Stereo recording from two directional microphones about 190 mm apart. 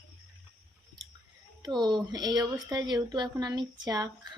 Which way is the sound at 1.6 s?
25° right (ahead or behind).